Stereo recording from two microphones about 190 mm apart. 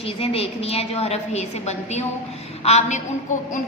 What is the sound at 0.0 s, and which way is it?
A woman's voice, 30° left (ahead or behind).